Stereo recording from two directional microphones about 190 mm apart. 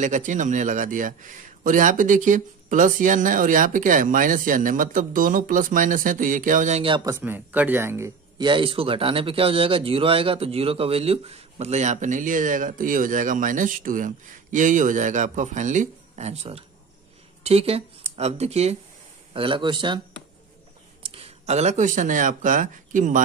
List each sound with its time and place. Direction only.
0.0 s speech: 40° right (ahead or behind)
7.1 s speech: 10° right (ahead or behind)
21.0 s speech: 30° right (ahead or behind)